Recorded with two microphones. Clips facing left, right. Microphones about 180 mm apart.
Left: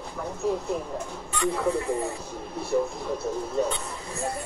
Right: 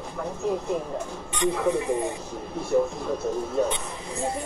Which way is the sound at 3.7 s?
20° right (ahead or behind).